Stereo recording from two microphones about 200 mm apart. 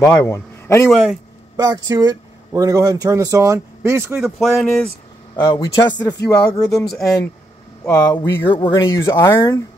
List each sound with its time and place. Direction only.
0.0 s a man's voice: 15° left (ahead or behind)
1.6 s speech: 20° right (ahead or behind)
4.2 s speech: centre (ahead or behind)
5.3 s speech: 20° left (ahead or behind)
6.7 s speech: centre (ahead or behind)
7.8 s speech: 15° left (ahead or behind)